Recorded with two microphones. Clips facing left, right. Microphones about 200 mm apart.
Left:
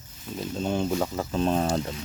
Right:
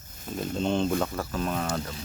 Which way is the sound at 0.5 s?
10° left (ahead or behind).